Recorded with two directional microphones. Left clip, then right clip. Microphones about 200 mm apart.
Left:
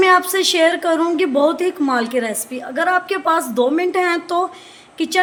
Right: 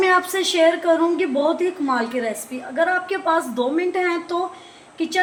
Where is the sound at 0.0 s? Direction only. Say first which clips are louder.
Left 4 dB; 35° left (ahead or behind).